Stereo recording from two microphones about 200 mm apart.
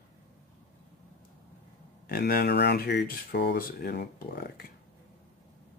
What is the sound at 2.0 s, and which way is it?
Speech, 50° left (ahead or behind).